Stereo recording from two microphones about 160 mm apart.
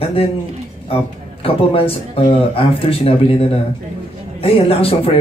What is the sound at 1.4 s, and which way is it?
Speech, 35° left (ahead or behind).